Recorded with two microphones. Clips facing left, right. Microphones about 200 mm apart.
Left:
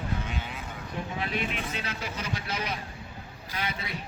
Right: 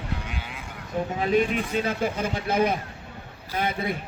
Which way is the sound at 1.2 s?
40° right (ahead or behind).